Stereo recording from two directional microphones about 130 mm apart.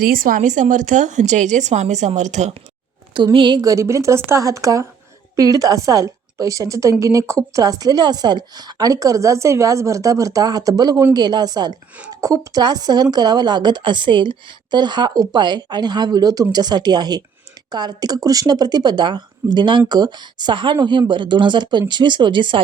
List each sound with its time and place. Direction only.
0.0 s a woman's voice: 90° right; by 2.6 s 65° right (ahead or behind)
3.3 s a woman's voice: 35° right (ahead or behind)